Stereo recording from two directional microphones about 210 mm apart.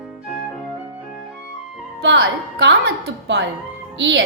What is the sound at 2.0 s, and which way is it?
A woman's voice, 60° right (ahead or behind).